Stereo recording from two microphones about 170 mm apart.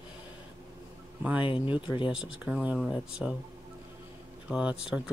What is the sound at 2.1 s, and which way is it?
Speech, 5° right (ahead or behind).